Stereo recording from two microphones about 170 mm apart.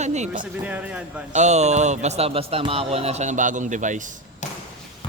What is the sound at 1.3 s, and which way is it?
Speech, 40° right (ahead or behind).